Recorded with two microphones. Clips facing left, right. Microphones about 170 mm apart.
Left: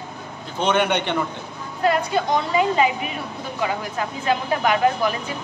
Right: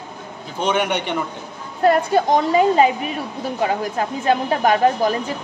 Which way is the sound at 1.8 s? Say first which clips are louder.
Right 5 dB; 45° right (ahead or behind).